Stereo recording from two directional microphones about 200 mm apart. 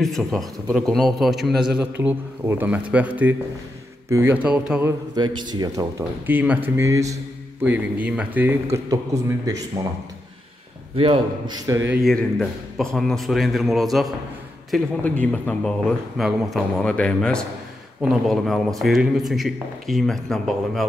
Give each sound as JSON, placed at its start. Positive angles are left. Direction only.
{"t": 0.0, "sound": "a man's voice", "side_deg": 0}
{"t": 5.1, "sound": "speech", "side_deg": -20}
{"t": 9.8, "sound": "speech", "side_deg": -15}
{"t": 11.0, "sound": "a man's voice", "side_deg": -25}
{"t": 11.9, "sound": "a man's voice", "side_deg": 0}